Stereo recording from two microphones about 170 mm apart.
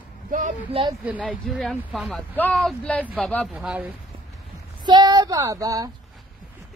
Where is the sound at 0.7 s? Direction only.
35° right (ahead or behind).